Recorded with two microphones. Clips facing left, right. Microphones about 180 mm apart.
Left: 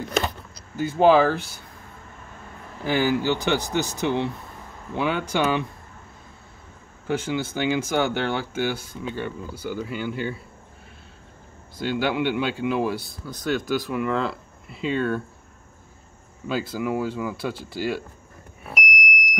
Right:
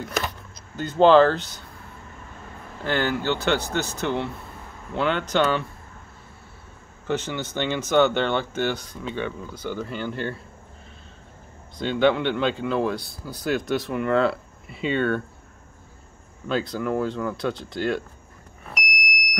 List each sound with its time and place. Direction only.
0.7 s speech: 10° left (ahead or behind)
2.8 s speech: 10° left (ahead or behind)
7.1 s speech: 10° left (ahead or behind)
11.8 s speech: 5° left (ahead or behind)
16.4 s speech: 5° left (ahead or behind)
18.7 s smoke detector: 10° left (ahead or behind)